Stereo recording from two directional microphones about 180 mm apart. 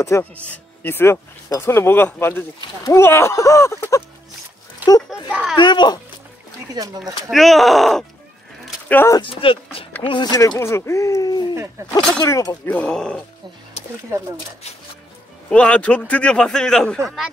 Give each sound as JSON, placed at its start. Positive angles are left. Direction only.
{"t": 0.0, "sound": "speech", "side_deg": 15}
{"t": 5.6, "sound": "speech", "side_deg": 25}
{"t": 6.7, "sound": "speech", "side_deg": -20}
{"t": 7.2, "sound": "a man's voice", "side_deg": 0}
{"t": 8.8, "sound": "speech", "side_deg": 15}
{"t": 9.2, "sound": "speech", "side_deg": 30}
{"t": 15.5, "sound": "a man's voice", "side_deg": 5}